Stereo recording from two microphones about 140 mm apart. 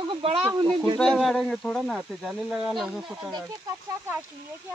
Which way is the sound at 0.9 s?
Centre (ahead or behind).